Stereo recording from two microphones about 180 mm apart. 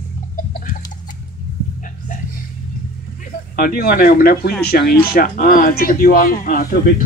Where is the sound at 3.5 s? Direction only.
55° left (ahead or behind).